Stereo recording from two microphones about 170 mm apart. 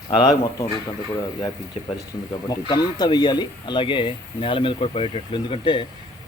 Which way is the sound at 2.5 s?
25° left (ahead or behind).